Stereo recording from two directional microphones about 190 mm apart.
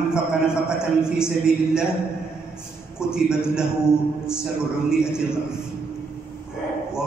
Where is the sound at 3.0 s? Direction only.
5° right (ahead or behind).